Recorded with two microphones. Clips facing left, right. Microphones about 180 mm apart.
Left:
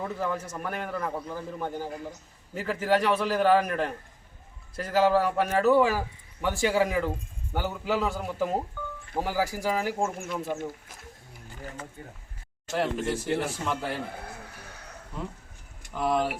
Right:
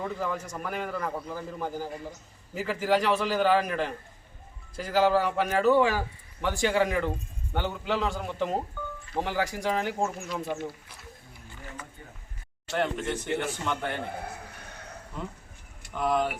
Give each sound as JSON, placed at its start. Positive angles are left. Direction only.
{"t": 0.0, "sound": "speech", "side_deg": 0}
{"t": 11.4, "sound": "a sound", "side_deg": 40}
{"t": 12.7, "sound": "speech", "side_deg": 0}
{"t": 15.2, "sound": "speech", "side_deg": 0}